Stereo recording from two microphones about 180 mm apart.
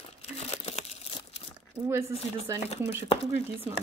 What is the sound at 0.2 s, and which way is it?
Crumpling, 35° left (ahead or behind).